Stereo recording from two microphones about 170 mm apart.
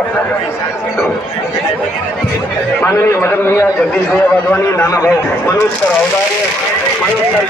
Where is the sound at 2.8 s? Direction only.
15° left (ahead or behind).